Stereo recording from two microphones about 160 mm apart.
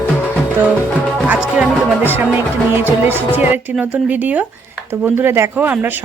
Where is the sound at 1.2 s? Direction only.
10° right (ahead or behind).